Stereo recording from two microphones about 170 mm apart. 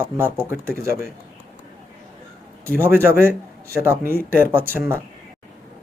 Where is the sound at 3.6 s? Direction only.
15° right (ahead or behind).